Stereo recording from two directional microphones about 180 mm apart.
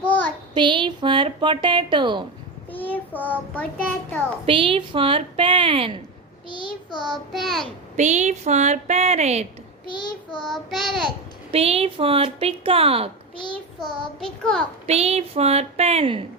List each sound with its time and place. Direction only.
0.0 s child singing: 10° left (ahead or behind)
0.5 s a woman's voice: 25° right (ahead or behind)
2.7 s child singing: 10° left (ahead or behind)
4.4 s a woman's voice: 30° right (ahead or behind)
7.0 s child singing: centre (ahead or behind)
7.9 s a woman's voice: 40° right (ahead or behind)
9.8 s child singing: 25° left (ahead or behind)
10.4 s child singing: centre (ahead or behind)
11.5 s a woman's voice: 35° right (ahead or behind)
13.5 s child singing: centre (ahead or behind)
14.8 s a woman's voice: 35° right (ahead or behind)